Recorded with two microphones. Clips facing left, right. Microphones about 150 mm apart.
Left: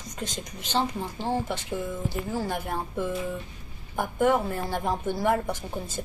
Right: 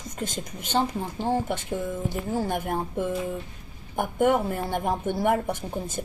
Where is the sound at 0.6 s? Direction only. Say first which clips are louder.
Right 2 dB; 15° right (ahead or behind).